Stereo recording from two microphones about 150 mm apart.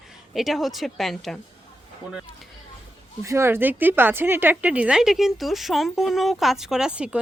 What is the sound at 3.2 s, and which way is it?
A woman's voice, 20° right (ahead or behind).